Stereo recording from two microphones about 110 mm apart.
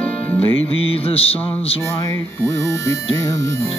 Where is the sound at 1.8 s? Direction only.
25° left (ahead or behind).